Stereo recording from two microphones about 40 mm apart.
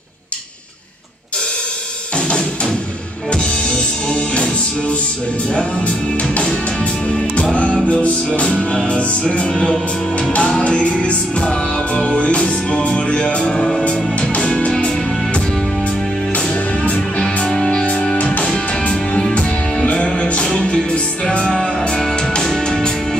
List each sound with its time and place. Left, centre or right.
2.1 s drum kit: left
3.3 s music: left
6.3 s music: left
16.3 s music: left
18.1 s music: left
19.2 s music: left
22.6 s music: centre